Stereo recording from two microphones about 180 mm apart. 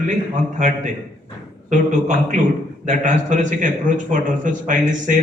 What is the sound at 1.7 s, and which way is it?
A man's voice, 45° right (ahead or behind).